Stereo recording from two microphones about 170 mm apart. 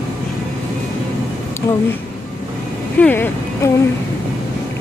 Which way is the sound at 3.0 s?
10° left (ahead or behind).